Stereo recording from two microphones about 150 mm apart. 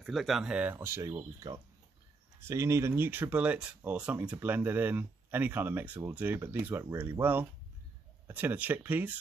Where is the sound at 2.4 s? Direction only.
20° right (ahead or behind).